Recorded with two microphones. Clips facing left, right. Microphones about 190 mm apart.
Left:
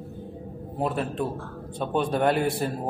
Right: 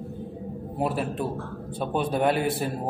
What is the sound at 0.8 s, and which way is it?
A man's voice, 5° right (ahead or behind).